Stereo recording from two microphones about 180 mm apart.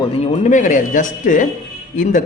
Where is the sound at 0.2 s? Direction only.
40° left (ahead or behind).